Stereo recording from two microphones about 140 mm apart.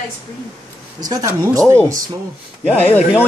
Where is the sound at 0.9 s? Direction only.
25° right (ahead or behind).